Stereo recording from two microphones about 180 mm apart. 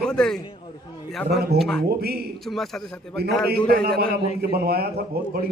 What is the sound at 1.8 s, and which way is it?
Speech, 60° right (ahead or behind).